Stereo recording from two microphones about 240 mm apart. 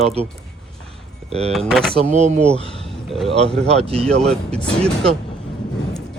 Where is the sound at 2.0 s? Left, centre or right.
Right.